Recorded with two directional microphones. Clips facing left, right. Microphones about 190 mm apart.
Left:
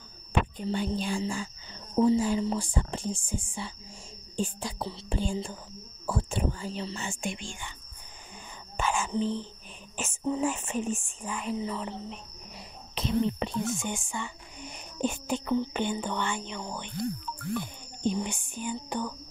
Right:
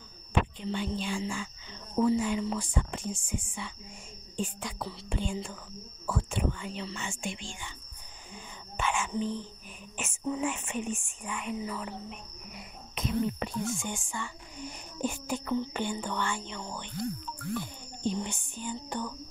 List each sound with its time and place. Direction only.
0.6 s speech: 40° left (ahead or behind)
8.7 s throat clearing: 40° left (ahead or behind)
9.9 s speech: 35° left (ahead or behind); by 16.9 s 15° left (ahead or behind)
17.6 s music: 15° left (ahead or behind)